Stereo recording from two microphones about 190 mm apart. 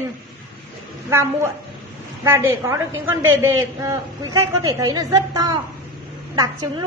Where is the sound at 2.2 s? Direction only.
15° right (ahead or behind).